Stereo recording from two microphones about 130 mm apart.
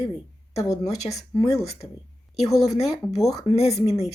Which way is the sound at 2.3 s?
55° left (ahead or behind).